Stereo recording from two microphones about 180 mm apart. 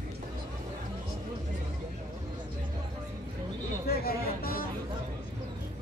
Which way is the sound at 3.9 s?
55° left (ahead or behind).